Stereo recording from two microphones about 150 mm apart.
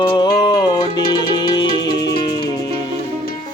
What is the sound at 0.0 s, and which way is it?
Music, 30° left (ahead or behind).